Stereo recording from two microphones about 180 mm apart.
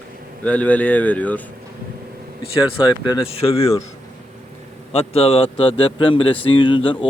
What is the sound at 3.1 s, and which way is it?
Speech, 30° left (ahead or behind).